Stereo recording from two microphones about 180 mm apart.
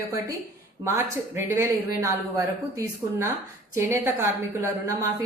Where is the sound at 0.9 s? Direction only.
15° right (ahead or behind).